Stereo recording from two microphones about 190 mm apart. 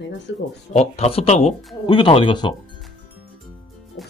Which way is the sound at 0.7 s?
35° left (ahead or behind).